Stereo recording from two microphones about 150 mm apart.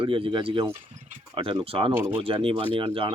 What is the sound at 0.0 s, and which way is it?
Speech, 35° right (ahead or behind).